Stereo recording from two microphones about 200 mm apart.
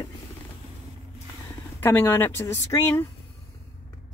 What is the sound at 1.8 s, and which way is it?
A woman's voice, 10° left (ahead or behind).